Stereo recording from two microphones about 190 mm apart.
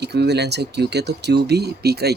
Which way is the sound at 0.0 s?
60° right (ahead or behind).